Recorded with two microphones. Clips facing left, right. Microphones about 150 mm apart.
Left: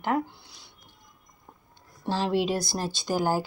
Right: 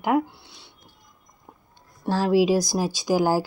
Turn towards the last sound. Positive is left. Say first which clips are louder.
# right 5 dB
turn(degrees=-10)  # may be behind; listen again after turning